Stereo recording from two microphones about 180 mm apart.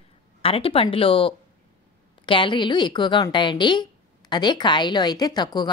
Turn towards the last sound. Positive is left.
turn(degrees=25)  # may be behind; listen again after turning